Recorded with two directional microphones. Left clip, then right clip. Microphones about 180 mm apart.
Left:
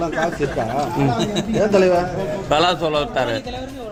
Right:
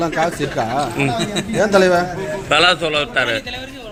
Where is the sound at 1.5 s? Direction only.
45° right (ahead or behind).